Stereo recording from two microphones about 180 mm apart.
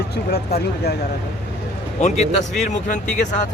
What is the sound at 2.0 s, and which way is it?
Speech, 40° left (ahead or behind).